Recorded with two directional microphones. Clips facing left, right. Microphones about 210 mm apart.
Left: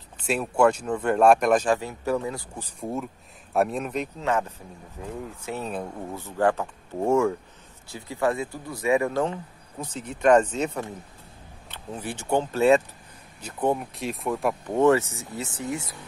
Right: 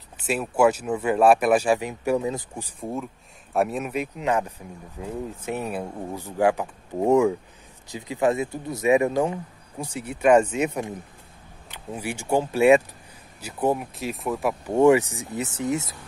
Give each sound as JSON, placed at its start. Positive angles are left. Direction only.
{"t": 0.2, "sound": "speech", "side_deg": -5}
{"t": 2.8, "sound": "speech", "side_deg": 0}
{"t": 14.8, "sound": "speech", "side_deg": -15}